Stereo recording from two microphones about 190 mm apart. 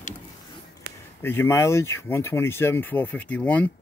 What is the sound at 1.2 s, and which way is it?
Speech, 10° left (ahead or behind).